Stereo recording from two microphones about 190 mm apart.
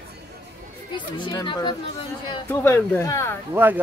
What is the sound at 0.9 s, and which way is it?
Speech, 25° left (ahead or behind).